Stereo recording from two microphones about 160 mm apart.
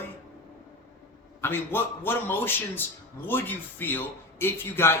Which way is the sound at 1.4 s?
15° left (ahead or behind).